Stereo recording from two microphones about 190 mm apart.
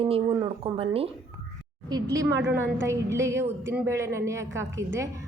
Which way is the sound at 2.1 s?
15° right (ahead or behind).